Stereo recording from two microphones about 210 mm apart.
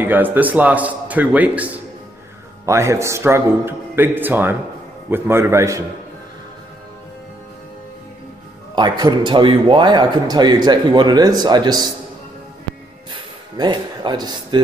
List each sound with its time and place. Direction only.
0.0 s a man's voice: 10° right (ahead or behind)
8.7 s a man's voice: 20° right (ahead or behind)
13.1 s a sound: 20° right (ahead or behind)